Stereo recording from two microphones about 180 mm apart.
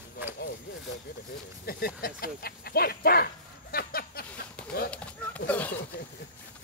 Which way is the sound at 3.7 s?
55° left (ahead or behind).